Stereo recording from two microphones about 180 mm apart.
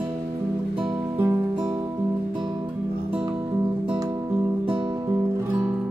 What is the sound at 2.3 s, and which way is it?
Music, 25° right (ahead or behind).